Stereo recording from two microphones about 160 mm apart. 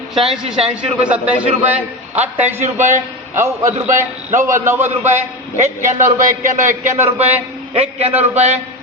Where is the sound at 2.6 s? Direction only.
50° right (ahead or behind).